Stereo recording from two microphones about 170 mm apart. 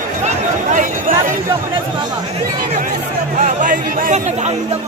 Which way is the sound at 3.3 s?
50° right (ahead or behind).